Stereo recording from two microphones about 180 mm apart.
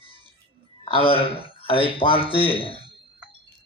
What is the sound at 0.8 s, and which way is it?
A man's voice, 30° left (ahead or behind).